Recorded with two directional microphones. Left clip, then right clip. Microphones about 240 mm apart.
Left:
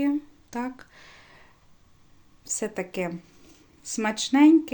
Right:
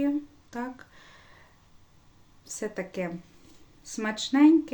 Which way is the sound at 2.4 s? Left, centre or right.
Left.